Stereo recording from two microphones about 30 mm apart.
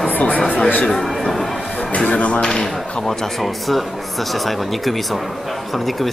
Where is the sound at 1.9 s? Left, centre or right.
Left.